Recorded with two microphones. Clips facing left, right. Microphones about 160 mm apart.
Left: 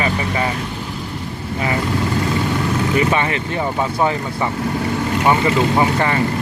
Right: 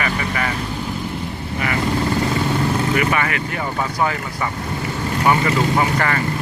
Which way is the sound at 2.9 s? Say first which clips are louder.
Left 2 dB; 25° left (ahead or behind).